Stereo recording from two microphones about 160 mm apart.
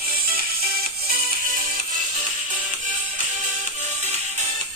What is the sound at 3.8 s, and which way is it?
Music, 45° right (ahead or behind).